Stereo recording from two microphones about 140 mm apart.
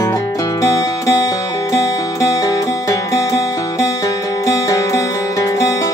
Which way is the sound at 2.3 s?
25° left (ahead or behind).